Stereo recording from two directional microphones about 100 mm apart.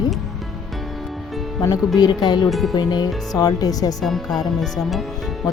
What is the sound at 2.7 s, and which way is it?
Speech, 45° left (ahead or behind).